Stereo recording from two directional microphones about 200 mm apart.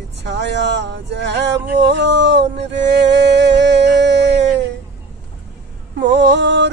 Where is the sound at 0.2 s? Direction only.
60° right (ahead or behind).